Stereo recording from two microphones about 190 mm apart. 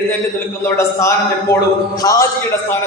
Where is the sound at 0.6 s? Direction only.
15° left (ahead or behind).